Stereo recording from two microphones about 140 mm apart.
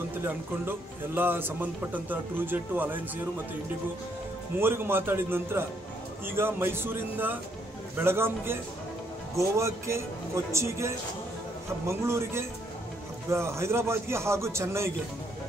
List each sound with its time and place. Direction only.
0.2 s a man's voice: 15° right (ahead or behind)
4.6 s a man's voice: 15° right (ahead or behind)